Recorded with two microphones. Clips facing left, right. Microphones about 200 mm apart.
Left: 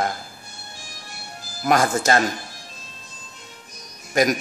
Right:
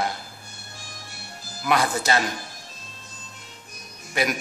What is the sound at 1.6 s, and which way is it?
Speech, 45° left (ahead or behind).